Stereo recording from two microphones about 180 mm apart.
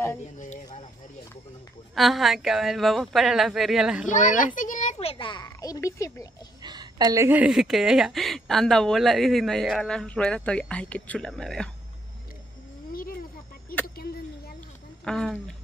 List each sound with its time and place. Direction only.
2.0 s a woman's voice: centre (ahead or behind)
4.1 s a child's voice: 45° left (ahead or behind); by 6.2 s 15° left (ahead or behind)
6.6 s a woman's voice: 25° right (ahead or behind); by 11.7 s 5° left (ahead or behind)
12.9 s a sound: 55° left (ahead or behind)
15.0 s a woman's voice: 5° left (ahead or behind)